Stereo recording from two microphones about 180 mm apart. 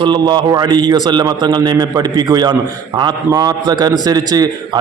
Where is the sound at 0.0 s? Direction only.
25° right (ahead or behind).